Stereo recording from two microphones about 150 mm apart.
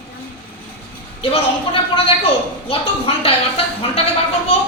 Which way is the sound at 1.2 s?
40° left (ahead or behind).